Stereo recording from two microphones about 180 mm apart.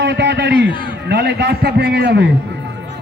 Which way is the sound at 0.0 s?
70° right (ahead or behind).